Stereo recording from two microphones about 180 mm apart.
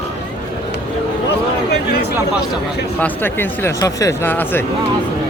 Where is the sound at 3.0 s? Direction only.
10° left (ahead or behind).